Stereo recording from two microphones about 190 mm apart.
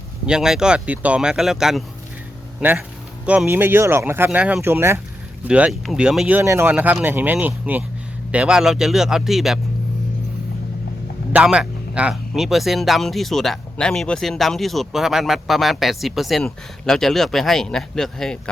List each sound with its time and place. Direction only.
0.3 s speech: 5° right (ahead or behind)
11.3 s speech: 5° right (ahead or behind)